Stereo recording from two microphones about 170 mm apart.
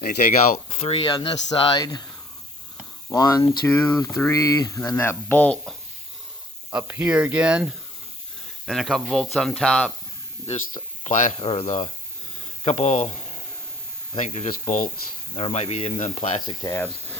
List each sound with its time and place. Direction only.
0.7 s speech: 30° left (ahead or behind)
3.1 s speech: 20° left (ahead or behind)
3.7 s speech: 10° left (ahead or behind)
3.9 s speech: 20° left (ahead or behind)
6.7 s speech: 10° right (ahead or behind)
11.0 s speech: 45° left (ahead or behind)
11.3 s speech: 35° left (ahead or behind)
16.5 s speech: 20° left (ahead or behind)